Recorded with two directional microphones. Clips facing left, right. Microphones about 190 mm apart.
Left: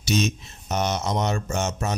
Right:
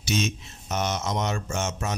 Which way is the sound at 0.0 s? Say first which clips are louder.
Left 3 dB; 40° left (ahead or behind).